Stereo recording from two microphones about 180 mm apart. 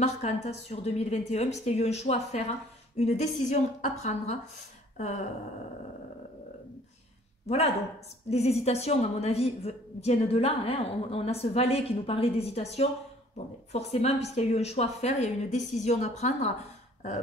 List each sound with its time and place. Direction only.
0.0 s a woman's voice: 40° left (ahead or behind)
4.9 s a sound: 40° left (ahead or behind)
7.4 s a woman's voice: 35° left (ahead or behind)